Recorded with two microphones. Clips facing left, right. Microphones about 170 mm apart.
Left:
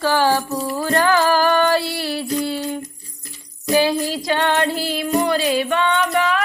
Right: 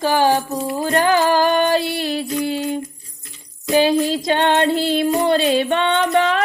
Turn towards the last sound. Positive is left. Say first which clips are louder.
# right 2 dB
turn(degrees=-30)  # may be behind; listen again after turning